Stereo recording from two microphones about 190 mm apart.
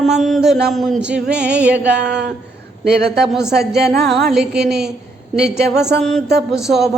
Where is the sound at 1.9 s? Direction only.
65° right (ahead or behind).